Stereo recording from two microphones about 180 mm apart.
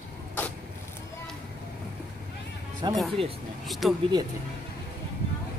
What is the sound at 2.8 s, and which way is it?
Speech, 25° right (ahead or behind).